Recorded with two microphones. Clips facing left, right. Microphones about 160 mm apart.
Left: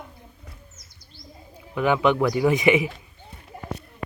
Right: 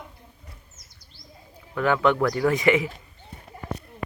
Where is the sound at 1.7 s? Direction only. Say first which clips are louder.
Left 1 dB; 15° left (ahead or behind).